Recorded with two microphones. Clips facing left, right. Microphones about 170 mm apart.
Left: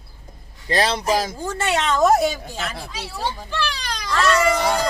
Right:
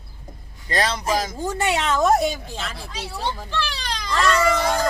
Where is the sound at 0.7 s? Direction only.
30° left (ahead or behind).